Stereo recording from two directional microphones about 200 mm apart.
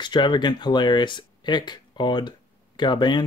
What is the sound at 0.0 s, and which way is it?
Speech, 20° left (ahead or behind).